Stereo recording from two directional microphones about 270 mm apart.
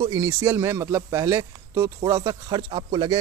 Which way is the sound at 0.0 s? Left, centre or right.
Centre.